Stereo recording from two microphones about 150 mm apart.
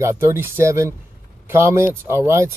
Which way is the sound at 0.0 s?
15° right (ahead or behind).